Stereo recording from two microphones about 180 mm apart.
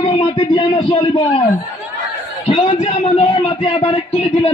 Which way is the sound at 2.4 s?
35° left (ahead or behind).